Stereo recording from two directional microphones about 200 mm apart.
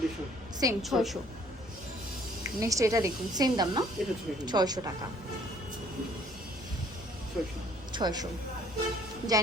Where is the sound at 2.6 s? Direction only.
15° right (ahead or behind).